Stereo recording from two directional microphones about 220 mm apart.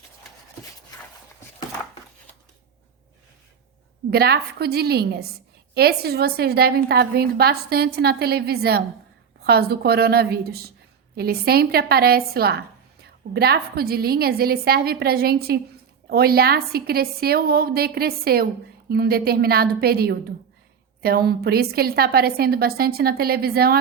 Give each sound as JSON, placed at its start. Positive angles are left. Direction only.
{"t": 4.1, "sound": "a woman's voice", "side_deg": -45}